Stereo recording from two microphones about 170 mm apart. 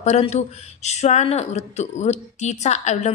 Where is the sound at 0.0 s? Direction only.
40° left (ahead or behind).